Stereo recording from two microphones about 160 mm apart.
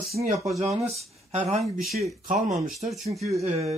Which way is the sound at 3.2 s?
Centre (ahead or behind).